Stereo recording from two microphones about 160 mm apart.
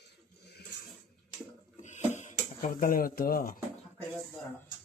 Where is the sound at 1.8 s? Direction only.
50° left (ahead or behind); by 3.6 s 65° left (ahead or behind).